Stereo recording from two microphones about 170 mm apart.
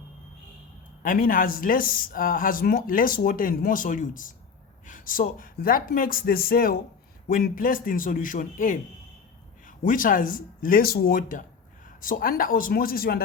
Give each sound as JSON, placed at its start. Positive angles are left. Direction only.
{"t": 1.0, "sound": "speech", "side_deg": 55}
{"t": 9.8, "sound": "speech", "side_deg": 55}